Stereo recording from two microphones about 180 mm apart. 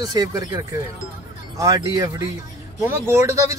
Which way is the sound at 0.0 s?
20° right (ahead or behind).